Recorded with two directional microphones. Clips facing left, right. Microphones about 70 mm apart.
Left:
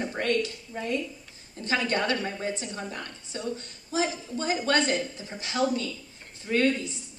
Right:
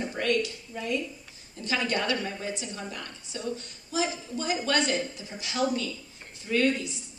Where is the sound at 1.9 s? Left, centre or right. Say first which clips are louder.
Left 1 dB; left.